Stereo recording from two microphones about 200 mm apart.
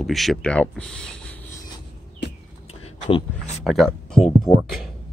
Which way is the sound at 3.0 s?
25° left (ahead or behind).